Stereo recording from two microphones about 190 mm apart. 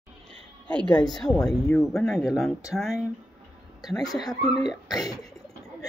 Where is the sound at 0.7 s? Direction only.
5° left (ahead or behind).